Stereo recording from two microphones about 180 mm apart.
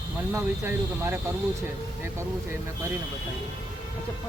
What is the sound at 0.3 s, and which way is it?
Speech, 15° right (ahead or behind).